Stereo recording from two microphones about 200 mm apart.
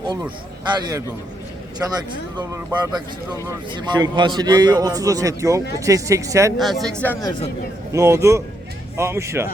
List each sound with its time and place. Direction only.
0.8 s a man's voice: 20° right (ahead or behind)
2.5 s a man's voice: 15° right (ahead or behind)
6.6 s speech: centre (ahead or behind)
7.9 s speech: 15° right (ahead or behind)